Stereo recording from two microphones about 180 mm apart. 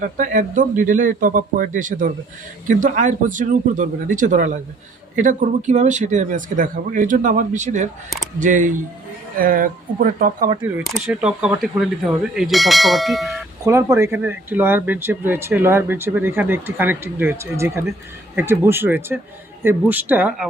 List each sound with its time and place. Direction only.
0.0 s a man's voice: 45° right (ahead or behind)
10.6 s speech: 5° right (ahead or behind)
13.7 s speech: 15° right (ahead or behind)